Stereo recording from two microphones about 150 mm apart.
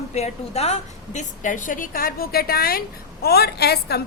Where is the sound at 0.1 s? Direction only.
45° left (ahead or behind).